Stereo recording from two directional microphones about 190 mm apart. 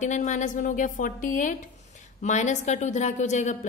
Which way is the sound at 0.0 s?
40° left (ahead or behind).